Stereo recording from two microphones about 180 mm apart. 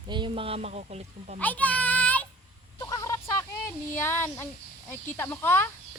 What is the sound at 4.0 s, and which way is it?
Speech, 10° left (ahead or behind).